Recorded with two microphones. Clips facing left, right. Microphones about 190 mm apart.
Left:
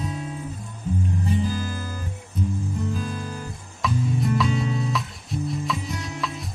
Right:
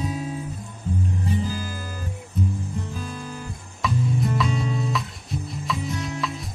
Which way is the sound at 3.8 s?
Centre (ahead or behind).